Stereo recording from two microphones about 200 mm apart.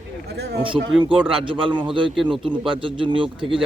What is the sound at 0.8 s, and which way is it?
Speech, 75° right (ahead or behind).